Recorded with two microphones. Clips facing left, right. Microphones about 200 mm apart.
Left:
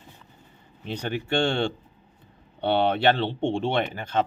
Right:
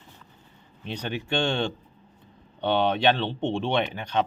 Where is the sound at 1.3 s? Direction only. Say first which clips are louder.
Left 2 dB; 10° left (ahead or behind).